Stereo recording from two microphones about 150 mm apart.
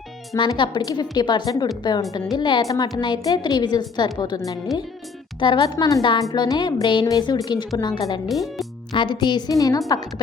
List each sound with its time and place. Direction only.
0.3 s a woman's voice: 30° left (ahead or behind)
8.3 s speech: centre (ahead or behind)
8.9 s a woman's voice: 30° left (ahead or behind)